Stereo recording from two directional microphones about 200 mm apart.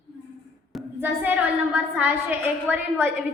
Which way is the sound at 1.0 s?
10° right (ahead or behind).